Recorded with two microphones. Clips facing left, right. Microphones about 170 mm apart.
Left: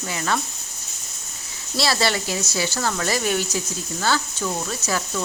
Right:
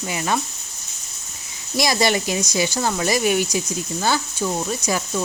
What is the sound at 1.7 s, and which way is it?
Speech, 15° right (ahead or behind).